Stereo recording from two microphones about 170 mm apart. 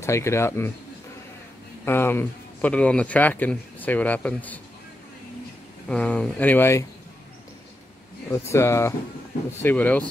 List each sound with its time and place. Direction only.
0.0 s speech: 15° left (ahead or behind)
1.9 s speech: 15° left (ahead or behind)
5.9 s speech: 5° left (ahead or behind)
8.3 s speech: 15° left (ahead or behind)